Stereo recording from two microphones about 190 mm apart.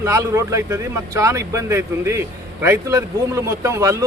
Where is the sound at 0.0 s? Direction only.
15° right (ahead or behind).